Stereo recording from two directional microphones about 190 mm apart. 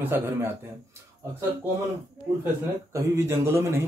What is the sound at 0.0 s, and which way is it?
Speech, 10° right (ahead or behind).